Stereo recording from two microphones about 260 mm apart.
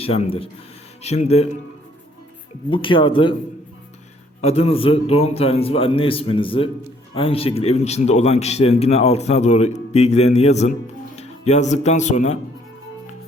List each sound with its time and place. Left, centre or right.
0.0 s a man's voice: left
2.6 s a man's voice: centre
4.4 s a man's voice: left